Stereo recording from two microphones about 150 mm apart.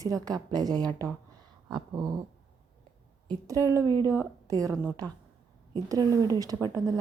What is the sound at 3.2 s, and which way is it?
A woman's voice, 20° right (ahead or behind).